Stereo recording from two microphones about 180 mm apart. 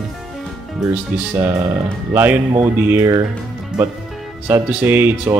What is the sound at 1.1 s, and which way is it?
Speech, 5° right (ahead or behind).